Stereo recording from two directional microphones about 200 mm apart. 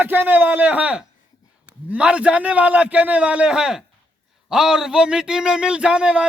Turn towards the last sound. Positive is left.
turn(degrees=-5)  # may be behind; listen again after turning